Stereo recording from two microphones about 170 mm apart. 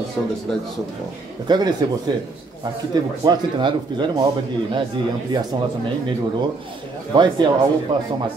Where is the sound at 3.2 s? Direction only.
25° right (ahead or behind).